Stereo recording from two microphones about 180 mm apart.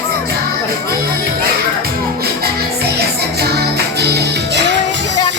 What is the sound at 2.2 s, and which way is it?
Music, 60° right (ahead or behind).